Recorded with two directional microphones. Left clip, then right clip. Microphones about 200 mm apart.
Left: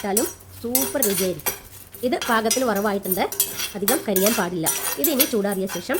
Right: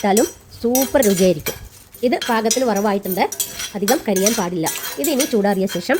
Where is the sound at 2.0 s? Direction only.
10° right (ahead or behind).